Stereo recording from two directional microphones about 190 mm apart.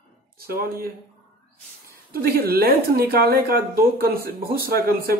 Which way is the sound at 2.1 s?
50° right (ahead or behind).